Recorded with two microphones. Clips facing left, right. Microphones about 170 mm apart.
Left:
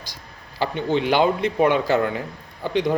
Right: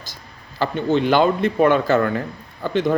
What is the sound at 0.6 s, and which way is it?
Speech, 15° left (ahead or behind).